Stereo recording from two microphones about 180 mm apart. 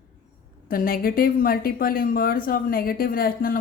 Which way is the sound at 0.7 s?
55° left (ahead or behind).